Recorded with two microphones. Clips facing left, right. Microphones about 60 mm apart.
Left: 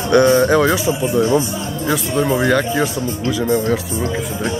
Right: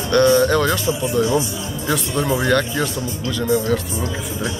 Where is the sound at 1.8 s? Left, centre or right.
Centre.